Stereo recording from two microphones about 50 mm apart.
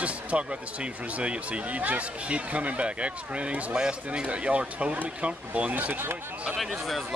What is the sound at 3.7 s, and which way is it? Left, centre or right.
Speech, centre.